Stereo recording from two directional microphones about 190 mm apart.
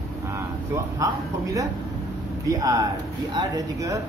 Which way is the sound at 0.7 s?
15° right (ahead or behind).